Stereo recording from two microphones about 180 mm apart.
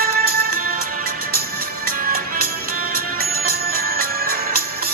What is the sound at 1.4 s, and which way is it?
Music, 55° right (ahead or behind).